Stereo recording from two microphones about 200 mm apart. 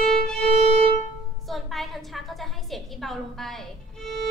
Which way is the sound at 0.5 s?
30° right (ahead or behind).